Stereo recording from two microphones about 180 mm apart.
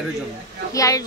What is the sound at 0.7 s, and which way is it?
Speech, 20° left (ahead or behind).